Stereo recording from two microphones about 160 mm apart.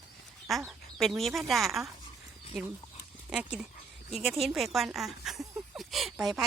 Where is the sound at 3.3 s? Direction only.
5° right (ahead or behind).